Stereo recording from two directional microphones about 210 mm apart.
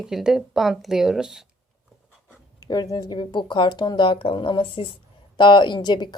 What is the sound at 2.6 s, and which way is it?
Speech, 20° left (ahead or behind).